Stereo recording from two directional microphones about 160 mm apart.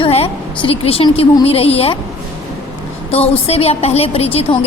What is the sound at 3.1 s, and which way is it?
A woman's voice, 40° left (ahead or behind).